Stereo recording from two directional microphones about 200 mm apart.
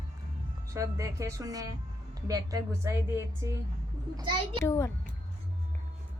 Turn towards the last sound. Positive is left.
turn(degrees=15)  # may be behind; listen again after turning